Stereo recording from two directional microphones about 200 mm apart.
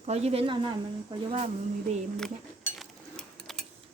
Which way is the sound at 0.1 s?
30° right (ahead or behind).